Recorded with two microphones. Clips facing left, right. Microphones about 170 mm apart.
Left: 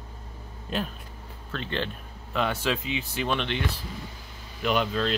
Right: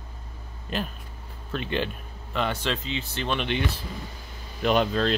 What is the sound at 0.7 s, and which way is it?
Speech, centre (ahead or behind).